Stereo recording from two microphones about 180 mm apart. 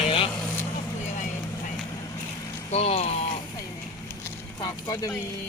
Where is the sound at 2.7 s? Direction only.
35° left (ahead or behind).